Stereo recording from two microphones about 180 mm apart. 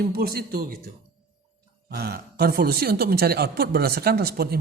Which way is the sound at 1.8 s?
60° right (ahead or behind).